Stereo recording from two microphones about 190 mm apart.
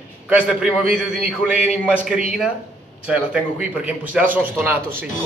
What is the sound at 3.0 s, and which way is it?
A man's voice, 5° right (ahead or behind).